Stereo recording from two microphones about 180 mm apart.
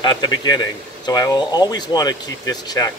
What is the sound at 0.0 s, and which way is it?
Speech, 25° left (ahead or behind).